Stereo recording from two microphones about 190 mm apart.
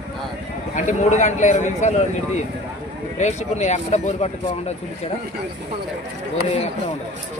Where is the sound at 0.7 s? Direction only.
40° left (ahead or behind).